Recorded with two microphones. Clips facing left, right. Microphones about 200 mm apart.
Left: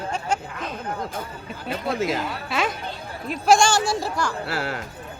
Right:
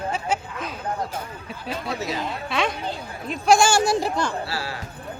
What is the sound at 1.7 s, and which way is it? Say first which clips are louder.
Speech: left 4 dB; 50° left (ahead or behind).